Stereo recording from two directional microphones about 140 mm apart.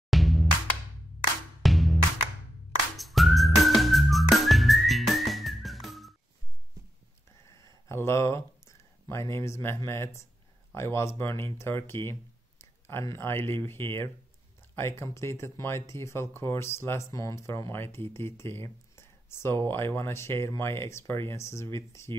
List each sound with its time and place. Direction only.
0.1 s music: centre (ahead or behind)
1.6 s music: centre (ahead or behind)
3.0 s whistling: centre (ahead or behind)
7.4 s a sound: 20° left (ahead or behind)
10.7 s speech: 20° left (ahead or behind)